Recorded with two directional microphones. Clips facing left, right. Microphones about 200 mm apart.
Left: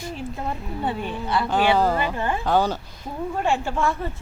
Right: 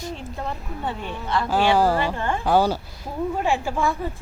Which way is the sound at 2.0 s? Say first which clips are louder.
Even; 15° left (ahead or behind).